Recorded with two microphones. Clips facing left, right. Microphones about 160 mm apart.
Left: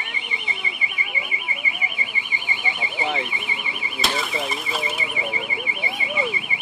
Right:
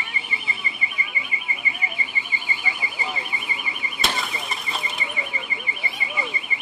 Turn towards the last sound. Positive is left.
turn(degrees=0)  # may be behind; listen again after turning